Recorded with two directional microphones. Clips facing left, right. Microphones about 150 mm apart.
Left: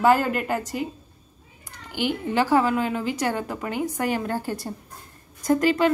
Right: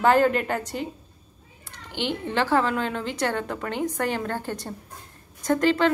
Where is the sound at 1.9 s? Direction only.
10° left (ahead or behind).